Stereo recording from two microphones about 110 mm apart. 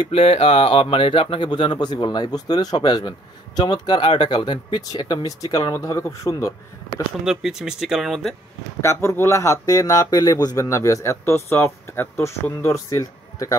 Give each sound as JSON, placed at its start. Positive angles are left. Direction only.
{"t": 0.0, "sound": "speech", "side_deg": 60}
{"t": 7.2, "sound": "speech", "side_deg": -5}
{"t": 8.8, "sound": "speech", "side_deg": 25}